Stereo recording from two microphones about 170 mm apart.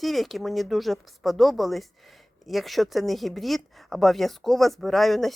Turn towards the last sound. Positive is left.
turn(degrees=0)  # may be behind; listen again after turning